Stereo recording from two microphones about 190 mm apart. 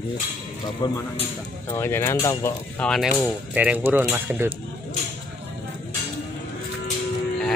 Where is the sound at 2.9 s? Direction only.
Centre (ahead or behind).